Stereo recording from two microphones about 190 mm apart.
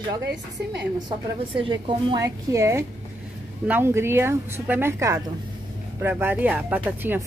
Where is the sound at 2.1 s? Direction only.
15° right (ahead or behind).